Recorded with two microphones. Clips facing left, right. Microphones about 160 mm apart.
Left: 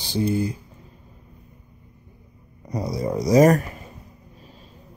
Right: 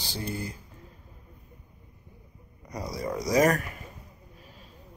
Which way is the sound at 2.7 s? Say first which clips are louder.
Left 7 dB; 25° left (ahead or behind).